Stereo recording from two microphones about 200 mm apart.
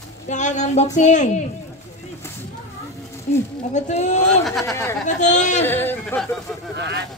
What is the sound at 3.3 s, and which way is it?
Speech, 35° left (ahead or behind).